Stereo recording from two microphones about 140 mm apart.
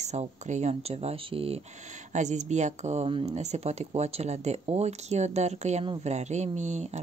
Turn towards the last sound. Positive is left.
turn(degrees=-55)  # may be behind; listen again after turning